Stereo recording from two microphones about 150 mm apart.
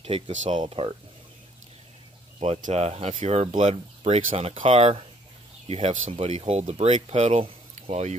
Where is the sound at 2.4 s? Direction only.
45° right (ahead or behind).